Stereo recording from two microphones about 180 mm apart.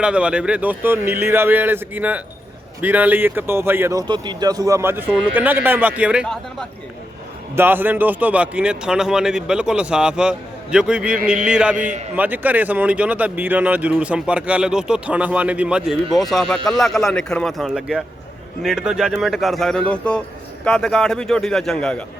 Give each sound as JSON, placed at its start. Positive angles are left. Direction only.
{"t": 0.0, "sound": "speech", "side_deg": -5}
{"t": 7.5, "sound": "a man's voice", "side_deg": -10}
{"t": 11.2, "sound": "a sound", "side_deg": -45}
{"t": 11.4, "sound": "a man's voice", "side_deg": -5}
{"t": 11.8, "sound": "a sound", "side_deg": -45}
{"t": 12.1, "sound": "a man's voice", "side_deg": -10}